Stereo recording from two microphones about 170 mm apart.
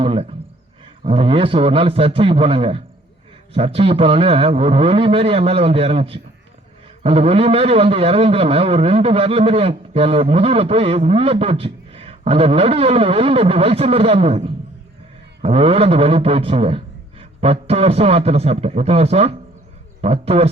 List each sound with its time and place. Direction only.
0.0 s speech: 35° right (ahead or behind)